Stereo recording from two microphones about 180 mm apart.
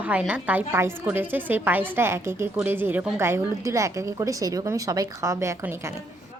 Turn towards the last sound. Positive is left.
turn(degrees=-15)  # may be behind; listen again after turning